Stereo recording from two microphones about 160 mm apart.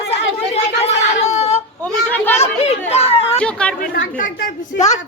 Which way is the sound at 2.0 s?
10° left (ahead or behind).